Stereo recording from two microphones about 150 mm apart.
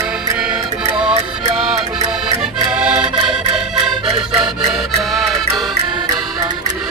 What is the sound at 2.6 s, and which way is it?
Accordion, 5° right (ahead or behind).